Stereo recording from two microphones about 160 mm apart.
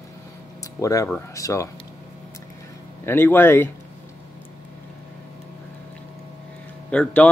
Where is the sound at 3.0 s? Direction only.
15° left (ahead or behind).